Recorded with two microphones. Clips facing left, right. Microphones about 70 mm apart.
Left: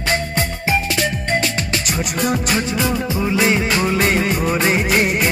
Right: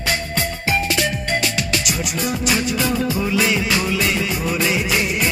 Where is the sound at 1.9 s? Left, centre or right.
Left.